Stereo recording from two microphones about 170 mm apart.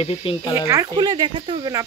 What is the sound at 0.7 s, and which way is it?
Speech, 20° right (ahead or behind).